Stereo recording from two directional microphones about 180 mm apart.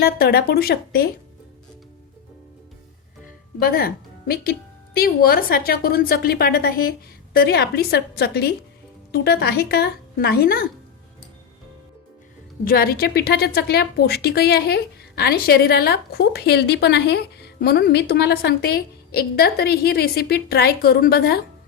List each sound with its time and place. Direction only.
0.0 s a woman's voice: 60° left (ahead or behind)
3.6 s a woman's voice: 55° left (ahead or behind)
12.6 s a woman's voice: 55° left (ahead or behind)